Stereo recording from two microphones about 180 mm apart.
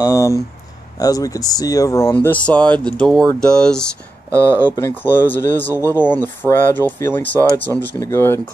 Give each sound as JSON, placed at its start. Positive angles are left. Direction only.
{"t": 0.1, "sound": "speech", "side_deg": 15}